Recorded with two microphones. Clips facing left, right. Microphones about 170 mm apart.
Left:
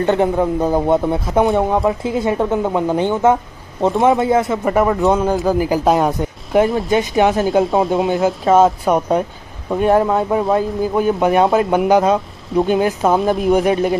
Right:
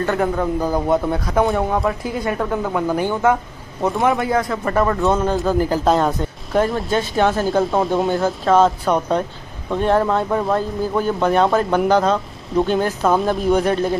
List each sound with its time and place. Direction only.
0.0 s speech: 20° left (ahead or behind)
7.4 s speech: centre (ahead or behind)